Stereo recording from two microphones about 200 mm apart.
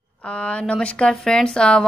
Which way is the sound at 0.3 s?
5° left (ahead or behind).